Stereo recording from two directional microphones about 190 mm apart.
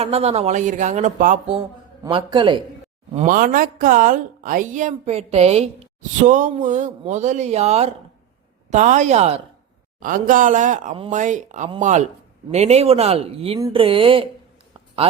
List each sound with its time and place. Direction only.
0.0 s speech: 30° right (ahead or behind)
2.0 s speech: 25° right (ahead or behind)
3.2 s speech: 45° right (ahead or behind); by 14.3 s 30° right (ahead or behind)